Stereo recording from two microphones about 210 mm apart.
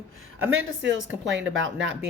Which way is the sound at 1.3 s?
60° right (ahead or behind).